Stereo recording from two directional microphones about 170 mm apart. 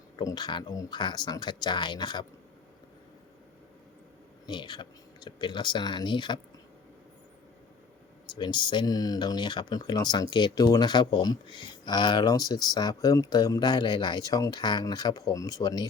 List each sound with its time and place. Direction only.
0.2 s speech: 25° left (ahead or behind)
4.4 s speech: 25° left (ahead or behind)
8.3 s speech: 25° left (ahead or behind)